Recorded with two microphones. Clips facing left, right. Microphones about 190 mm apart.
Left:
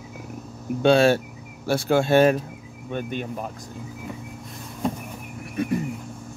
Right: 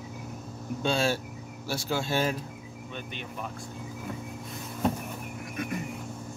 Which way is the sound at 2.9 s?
50° left (ahead or behind).